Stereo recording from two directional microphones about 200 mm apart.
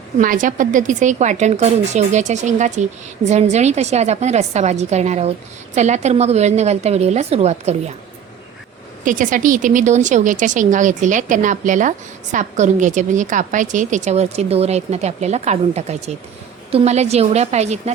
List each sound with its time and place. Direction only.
0.2 s speech: 40° right (ahead or behind)
9.0 s speech: 40° right (ahead or behind)